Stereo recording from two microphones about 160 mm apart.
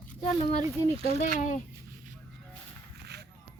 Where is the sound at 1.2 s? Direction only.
55° left (ahead or behind).